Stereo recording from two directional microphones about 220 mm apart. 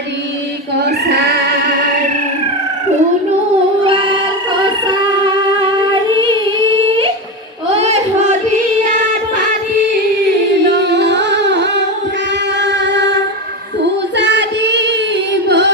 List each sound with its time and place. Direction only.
3.8 s music: 25° right (ahead or behind)
7.7 s a sound: 30° right (ahead or behind)
10.6 s music: 50° right (ahead or behind)
12.5 s singing: 50° right (ahead or behind)
14.1 s music: 50° right (ahead or behind)